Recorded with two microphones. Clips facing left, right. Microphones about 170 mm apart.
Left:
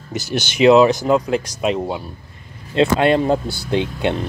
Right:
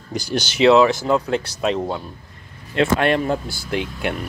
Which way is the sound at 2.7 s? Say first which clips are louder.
Left 3 dB; 20° left (ahead or behind).